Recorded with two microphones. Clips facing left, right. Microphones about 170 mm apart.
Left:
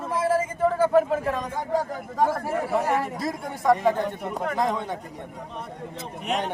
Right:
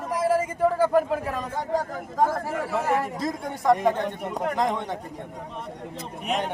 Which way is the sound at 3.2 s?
Centre (ahead or behind).